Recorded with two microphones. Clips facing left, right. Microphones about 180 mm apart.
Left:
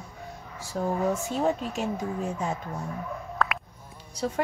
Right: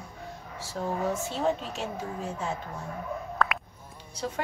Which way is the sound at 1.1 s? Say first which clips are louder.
Left 2 dB; 45° left (ahead or behind).